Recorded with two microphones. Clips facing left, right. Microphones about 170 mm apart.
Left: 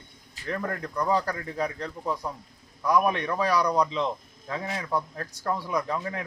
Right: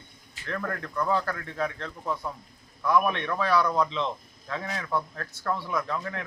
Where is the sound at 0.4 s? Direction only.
15° left (ahead or behind).